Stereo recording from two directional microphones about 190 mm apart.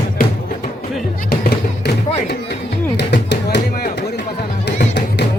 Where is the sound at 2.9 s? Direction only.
60° left (ahead or behind).